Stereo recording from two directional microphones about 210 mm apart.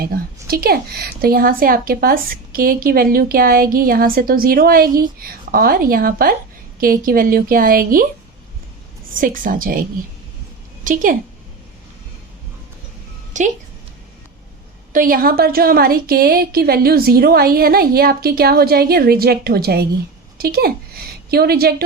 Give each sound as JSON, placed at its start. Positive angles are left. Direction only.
{"t": 0.0, "sound": "a woman's voice", "side_deg": -45}
{"t": 9.1, "sound": "a woman's voice", "side_deg": -40}
{"t": 10.8, "sound": "a woman's voice", "side_deg": -40}
{"t": 13.3, "sound": "a woman's voice", "side_deg": -35}
{"t": 14.9, "sound": "a woman's voice", "side_deg": -40}